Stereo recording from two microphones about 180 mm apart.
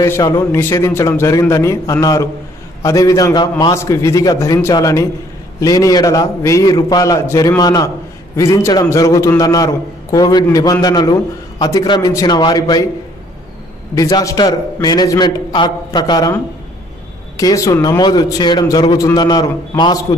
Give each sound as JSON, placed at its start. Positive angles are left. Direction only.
{"t": 0.0, "sound": "a man's voice", "side_deg": 15}
{"t": 13.9, "sound": "a man's voice", "side_deg": 20}
{"t": 17.4, "sound": "a man's voice", "side_deg": 20}